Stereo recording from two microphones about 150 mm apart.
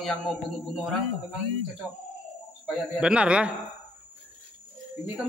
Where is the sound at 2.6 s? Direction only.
5° right (ahead or behind).